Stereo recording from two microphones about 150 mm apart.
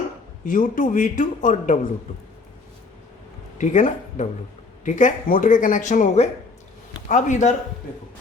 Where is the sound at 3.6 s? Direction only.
55° left (ahead or behind).